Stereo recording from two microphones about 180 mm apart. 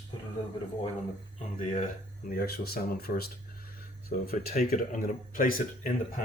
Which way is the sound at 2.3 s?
60° left (ahead or behind).